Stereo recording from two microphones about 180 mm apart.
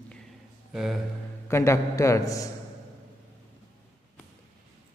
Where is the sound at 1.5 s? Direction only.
15° left (ahead or behind).